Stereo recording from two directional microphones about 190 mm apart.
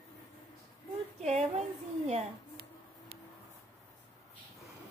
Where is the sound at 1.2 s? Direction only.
35° right (ahead or behind).